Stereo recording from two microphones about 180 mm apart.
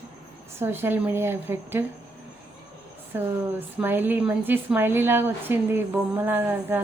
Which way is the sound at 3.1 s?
10° right (ahead or behind).